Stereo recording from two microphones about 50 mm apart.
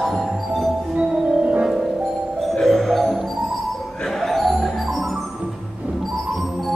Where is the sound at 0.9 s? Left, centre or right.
Right.